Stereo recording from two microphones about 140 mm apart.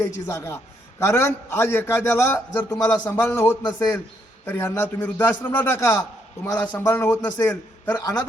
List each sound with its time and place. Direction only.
0.0 s a man's voice: 20° left (ahead or behind)
3.6 s a man's voice: 30° left (ahead or behind)
4.4 s a man's voice: 15° left (ahead or behind)